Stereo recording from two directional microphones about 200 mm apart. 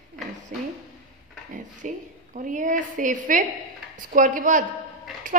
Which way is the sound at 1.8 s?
40° right (ahead or behind).